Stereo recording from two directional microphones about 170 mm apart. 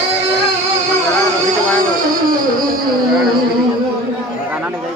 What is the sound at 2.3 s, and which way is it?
Music, 55° right (ahead or behind).